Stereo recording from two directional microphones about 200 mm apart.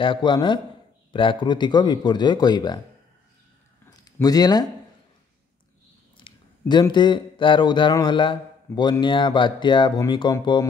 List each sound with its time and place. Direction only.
0.0 s speech: 25° left (ahead or behind)
3.9 s a sound: 20° left (ahead or behind)
6.1 s speech: 25° left (ahead or behind)